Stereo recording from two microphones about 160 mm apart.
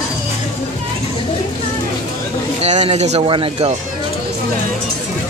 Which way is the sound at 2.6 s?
45° right (ahead or behind).